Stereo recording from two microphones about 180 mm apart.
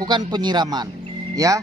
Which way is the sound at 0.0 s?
20° right (ahead or behind).